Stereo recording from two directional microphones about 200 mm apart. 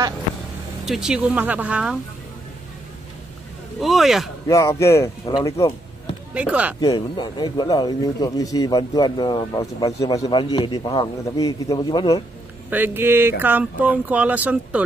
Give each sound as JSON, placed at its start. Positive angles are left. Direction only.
{"t": 0.8, "sound": "speech", "side_deg": 0}
{"t": 3.8, "sound": "speech", "side_deg": 0}
{"t": 4.5, "sound": "speech", "side_deg": 15}
{"t": 6.3, "sound": "speech", "side_deg": -5}
{"t": 6.8, "sound": "speech", "side_deg": 20}
{"t": 12.6, "sound": "speech", "side_deg": -10}